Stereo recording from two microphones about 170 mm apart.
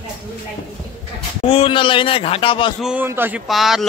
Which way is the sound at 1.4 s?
30° left (ahead or behind).